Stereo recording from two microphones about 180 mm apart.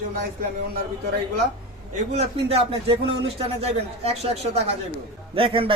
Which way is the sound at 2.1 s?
35° right (ahead or behind).